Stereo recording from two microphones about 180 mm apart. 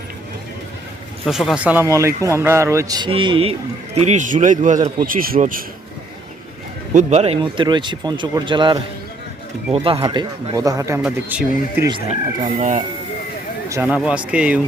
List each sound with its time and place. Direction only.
1.2 s a man's voice: centre (ahead or behind); by 3.5 s 30° right (ahead or behind)
4.0 s a man's voice: 40° right (ahead or behind)
6.9 s a man's voice: 35° right (ahead or behind)
7.3 s a man's voice: 25° right (ahead or behind); by 11.9 s 5° right (ahead or behind)
11.9 s speech: 25° right (ahead or behind)
13.7 s a man's voice: 10° right (ahead or behind)